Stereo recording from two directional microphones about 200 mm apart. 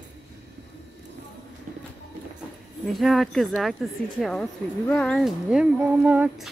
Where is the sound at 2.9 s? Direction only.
Centre (ahead or behind).